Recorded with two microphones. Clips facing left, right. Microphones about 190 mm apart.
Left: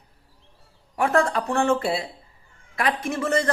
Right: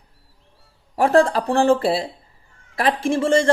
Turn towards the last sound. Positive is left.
turn(degrees=-30)  # may be behind; listen again after turning